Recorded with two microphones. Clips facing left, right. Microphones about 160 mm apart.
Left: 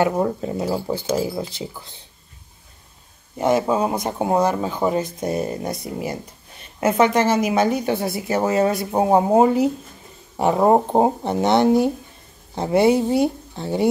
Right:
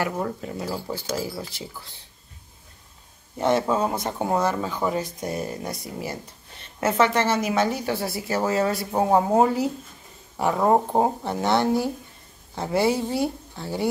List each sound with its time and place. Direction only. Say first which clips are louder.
0.2 s a woman's voice: left 7 dB; 25° left (ahead or behind)
3.3 s a woman's voice: left 3 dB; 10° left (ahead or behind)